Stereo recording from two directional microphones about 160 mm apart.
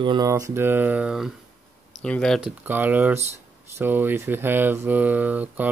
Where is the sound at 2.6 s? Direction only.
10° right (ahead or behind).